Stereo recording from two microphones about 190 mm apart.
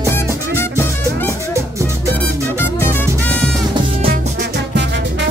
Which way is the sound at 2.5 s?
10° left (ahead or behind).